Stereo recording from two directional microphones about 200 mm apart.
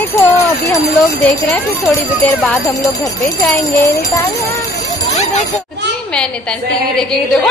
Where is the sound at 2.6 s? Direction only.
15° left (ahead or behind).